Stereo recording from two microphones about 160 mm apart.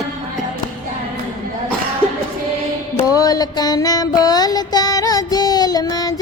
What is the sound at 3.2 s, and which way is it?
Child singing, 25° left (ahead or behind).